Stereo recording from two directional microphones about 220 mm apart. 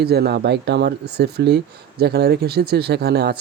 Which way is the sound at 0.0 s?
45° right (ahead or behind).